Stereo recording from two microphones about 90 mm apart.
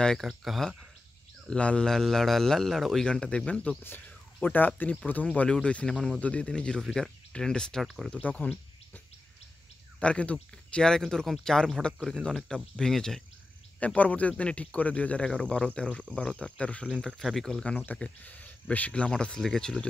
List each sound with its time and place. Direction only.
0.0 s speech: centre (ahead or behind)
1.5 s speech: 10° left (ahead or behind)
13.7 s speech: 15° left (ahead or behind)
17.2 s speech: centre (ahead or behind)
17.8 s speech: 15° left (ahead or behind)